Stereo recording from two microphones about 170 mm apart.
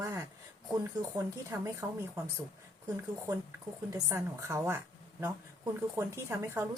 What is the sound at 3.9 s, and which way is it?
Speech, 15° right (ahead or behind).